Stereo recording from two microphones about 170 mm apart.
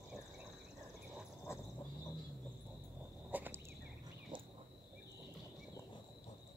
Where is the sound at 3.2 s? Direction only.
10° right (ahead or behind).